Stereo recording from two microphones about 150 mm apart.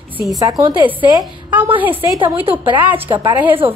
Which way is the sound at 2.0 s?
25° right (ahead or behind).